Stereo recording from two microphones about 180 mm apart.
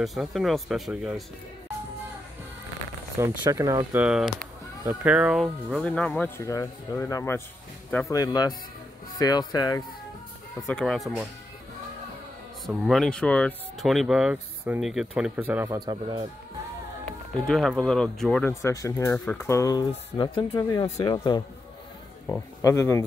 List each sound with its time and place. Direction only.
0.0 s speech: centre (ahead or behind)
3.2 s speech: 15° right (ahead or behind); by 9.8 s 20° left (ahead or behind)
10.7 s speech: 5° left (ahead or behind)
12.6 s speech: centre (ahead or behind); by 16.3 s 25° right (ahead or behind)
17.5 s speech: centre (ahead or behind)
18.5 s speech: 15° left (ahead or behind)
19.1 s speech: centre (ahead or behind)
19.4 s speech: 15° left (ahead or behind)
22.6 s speech: 15° left (ahead or behind)